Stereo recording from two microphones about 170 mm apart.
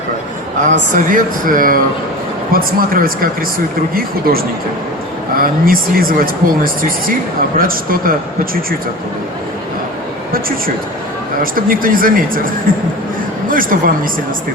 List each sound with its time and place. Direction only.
0.6 s speech: 50° right (ahead or behind)
7.6 s speech: 55° right (ahead or behind)
11.7 s speech: 55° right (ahead or behind)